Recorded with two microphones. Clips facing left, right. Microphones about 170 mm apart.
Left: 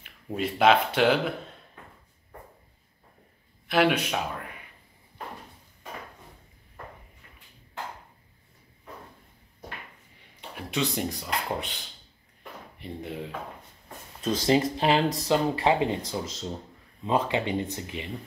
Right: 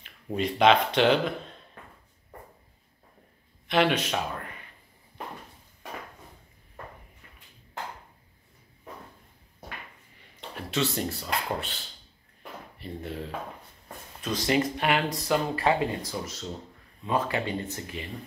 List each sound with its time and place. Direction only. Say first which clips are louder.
0.0 s speech: right 1 dB; 5° left (ahead or behind)
3.6 s speech: left 1 dB; 10° left (ahead or behind)
10.5 s speech: even; 10° left (ahead or behind)
12.7 s speech: left 1 dB; 15° left (ahead or behind)
14.2 s speech: left 3 dB; 30° left (ahead or behind)